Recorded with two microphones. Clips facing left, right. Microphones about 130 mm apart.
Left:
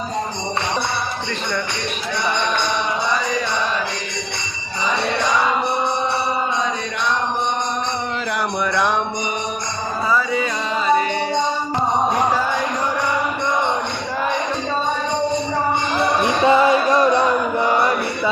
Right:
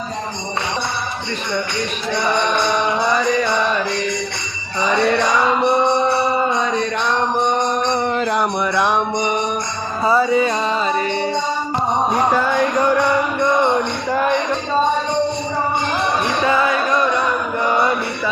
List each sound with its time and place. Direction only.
8.3 s music: 20° right (ahead or behind)
10.1 s music: 35° right (ahead or behind)
16.4 s music: 25° left (ahead or behind)